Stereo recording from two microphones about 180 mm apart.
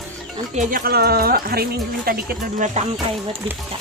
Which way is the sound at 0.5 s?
50° right (ahead or behind).